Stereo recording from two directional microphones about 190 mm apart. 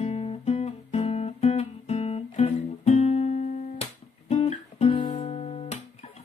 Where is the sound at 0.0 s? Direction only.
35° left (ahead or behind).